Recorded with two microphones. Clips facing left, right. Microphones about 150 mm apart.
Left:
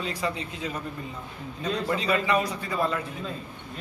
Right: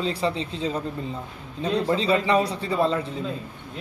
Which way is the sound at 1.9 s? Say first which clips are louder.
Right 3 dB; 30° right (ahead or behind).